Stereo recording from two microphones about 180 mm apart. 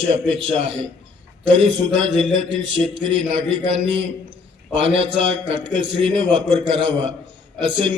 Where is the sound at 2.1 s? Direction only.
25° right (ahead or behind).